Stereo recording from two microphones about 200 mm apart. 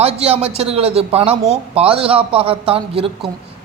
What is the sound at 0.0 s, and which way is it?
A man's voice, 30° right (ahead or behind).